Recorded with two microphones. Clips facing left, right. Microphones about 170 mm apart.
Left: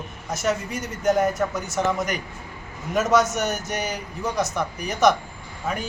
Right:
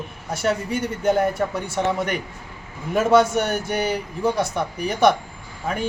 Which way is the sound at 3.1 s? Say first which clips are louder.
Right 4 dB; 30° right (ahead or behind).